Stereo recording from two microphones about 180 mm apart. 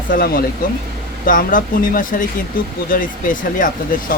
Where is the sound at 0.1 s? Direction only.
55° left (ahead or behind).